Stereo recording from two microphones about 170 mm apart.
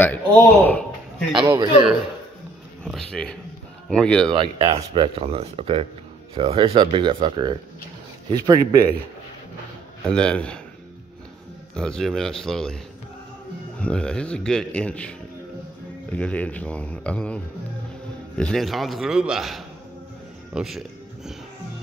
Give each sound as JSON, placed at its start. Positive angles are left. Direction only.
{"t": 0.0, "sound": "speech", "side_deg": 10}
{"t": 1.3, "sound": "speech", "side_deg": -25}
{"t": 2.8, "sound": "a man's voice", "side_deg": 5}
{"t": 4.3, "sound": "speech", "side_deg": -30}
{"t": 10.0, "sound": "a man's voice", "side_deg": 5}
{"t": 11.7, "sound": "a man's voice", "side_deg": 5}
{"t": 13.7, "sound": "a man's voice", "side_deg": 5}
{"t": 18.4, "sound": "a man's voice", "side_deg": 0}